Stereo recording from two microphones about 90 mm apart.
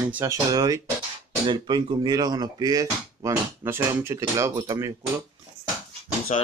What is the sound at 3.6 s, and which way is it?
Speech, 25° right (ahead or behind).